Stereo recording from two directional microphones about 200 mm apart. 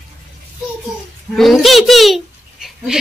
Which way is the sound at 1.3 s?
Centre (ahead or behind).